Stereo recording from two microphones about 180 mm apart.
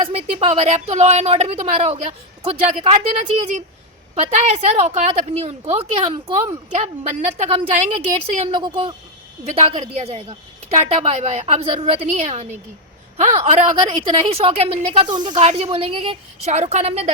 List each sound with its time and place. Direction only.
0.1 s a woman's voice: 35° right (ahead or behind)
15.4 s a woman's voice: 35° right (ahead or behind)